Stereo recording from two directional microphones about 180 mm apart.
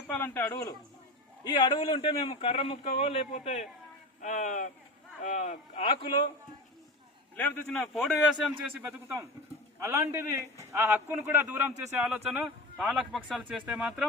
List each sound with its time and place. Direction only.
0.1 s a man's voice: 10° left (ahead or behind)
1.5 s a man's voice: 25° left (ahead or behind)
5.8 s a man's voice: 30° left (ahead or behind)
7.3 s a man's voice: 10° left (ahead or behind)